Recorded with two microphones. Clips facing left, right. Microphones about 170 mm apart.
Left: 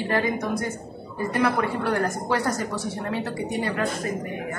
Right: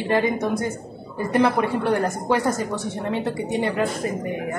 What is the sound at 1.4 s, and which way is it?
Speech, 20° right (ahead or behind).